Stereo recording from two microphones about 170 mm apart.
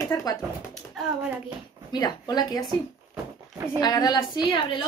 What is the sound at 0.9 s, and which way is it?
Speech, 5° right (ahead or behind).